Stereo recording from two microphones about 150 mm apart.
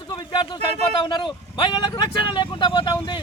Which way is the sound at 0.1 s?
30° left (ahead or behind).